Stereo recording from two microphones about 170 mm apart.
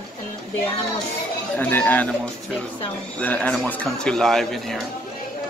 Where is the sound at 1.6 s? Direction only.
10° left (ahead or behind).